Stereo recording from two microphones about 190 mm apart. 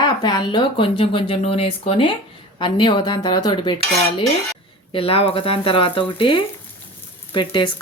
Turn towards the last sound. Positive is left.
turn(degrees=25)  # may be behind; listen again after turning